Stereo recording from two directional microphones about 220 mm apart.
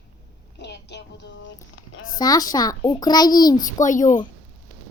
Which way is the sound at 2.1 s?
15° left (ahead or behind).